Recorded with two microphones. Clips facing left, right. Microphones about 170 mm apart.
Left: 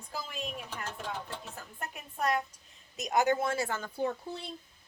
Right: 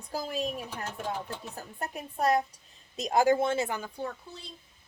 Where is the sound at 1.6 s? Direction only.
35° right (ahead or behind); by 3.8 s 20° right (ahead or behind).